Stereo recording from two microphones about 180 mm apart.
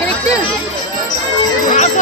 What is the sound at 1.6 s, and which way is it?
Speech, 45° left (ahead or behind).